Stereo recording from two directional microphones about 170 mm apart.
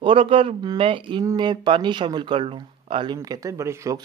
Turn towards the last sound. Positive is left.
turn(degrees=-15)  # may be behind; listen again after turning